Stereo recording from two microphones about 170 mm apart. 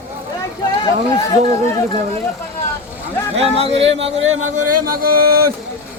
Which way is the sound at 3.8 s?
35° right (ahead or behind).